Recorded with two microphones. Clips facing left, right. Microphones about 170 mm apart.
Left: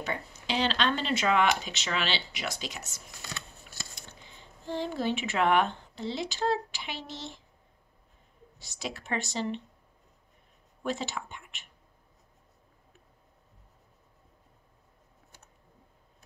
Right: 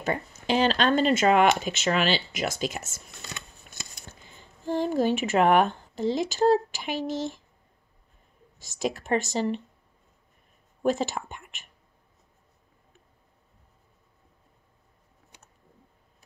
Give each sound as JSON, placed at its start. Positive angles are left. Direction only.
{"t": 0.0, "sound": "speech", "side_deg": -50}
{"t": 3.8, "sound": "a sound", "side_deg": -20}
{"t": 4.1, "sound": "speech", "side_deg": -45}
{"t": 8.5, "sound": "speech", "side_deg": -45}
{"t": 10.8, "sound": "speech", "side_deg": -45}